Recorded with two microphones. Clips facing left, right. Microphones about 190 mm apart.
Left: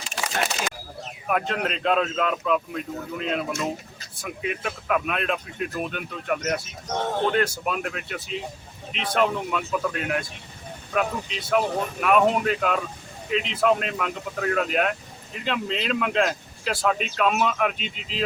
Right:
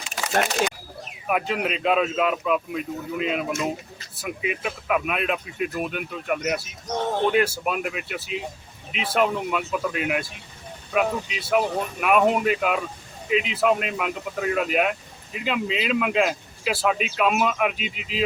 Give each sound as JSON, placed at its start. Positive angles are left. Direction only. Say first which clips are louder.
{"t": 1.3, "sound": "speech", "louder": "right 1 dB", "side_deg": -5}